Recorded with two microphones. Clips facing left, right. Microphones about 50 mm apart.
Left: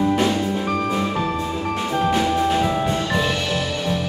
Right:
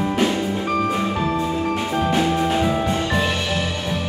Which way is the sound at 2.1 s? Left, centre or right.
Centre.